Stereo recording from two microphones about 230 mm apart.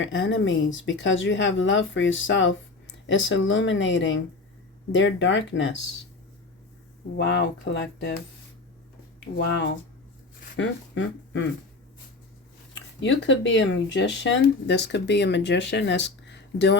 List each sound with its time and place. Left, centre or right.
0.0 s speech: left
7.2 s speech: left
9.2 s speech: left
13.0 s speech: left